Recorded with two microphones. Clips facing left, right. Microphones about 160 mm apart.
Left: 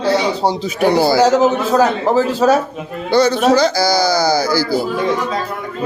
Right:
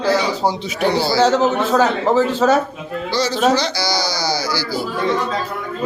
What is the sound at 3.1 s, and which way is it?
Speech, 55° left (ahead or behind).